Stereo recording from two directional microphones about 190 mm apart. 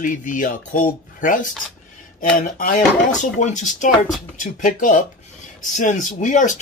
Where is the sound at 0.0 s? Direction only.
45° left (ahead or behind).